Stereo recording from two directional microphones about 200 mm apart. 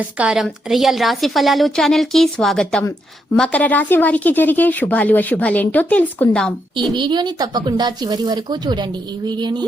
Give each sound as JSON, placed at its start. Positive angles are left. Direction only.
{"t": 0.2, "sound": "a woman's voice", "side_deg": 0}
{"t": 6.9, "sound": "speech", "side_deg": -20}